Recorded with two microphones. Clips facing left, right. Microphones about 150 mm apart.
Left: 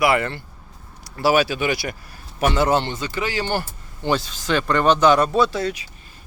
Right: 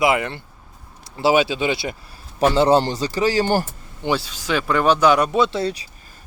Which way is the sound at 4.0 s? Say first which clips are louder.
Even; 10° right (ahead or behind).